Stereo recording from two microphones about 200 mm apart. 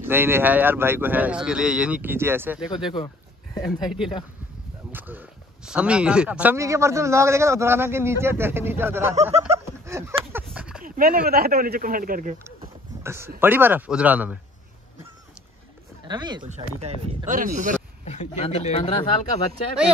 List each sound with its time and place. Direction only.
0.0 s a man's voice: 10° right (ahead or behind)
2.7 s speech: 25° left (ahead or behind)
4.9 s a man's voice: 10° right (ahead or behind)
9.8 s a sound: 15° right (ahead or behind)
10.8 s speech: 45° right (ahead or behind)
13.0 s a man's voice: 15° right (ahead or behind)
16.1 s speech: 20° right (ahead or behind)
16.4 s speech: 35° right (ahead or behind)
18.0 s speech: 35° left (ahead or behind)
18.9 s speech: 25° left (ahead or behind)